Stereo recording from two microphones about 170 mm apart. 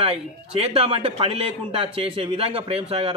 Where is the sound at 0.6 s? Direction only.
35° right (ahead or behind).